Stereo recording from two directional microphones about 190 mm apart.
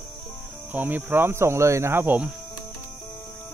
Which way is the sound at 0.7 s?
10° right (ahead or behind).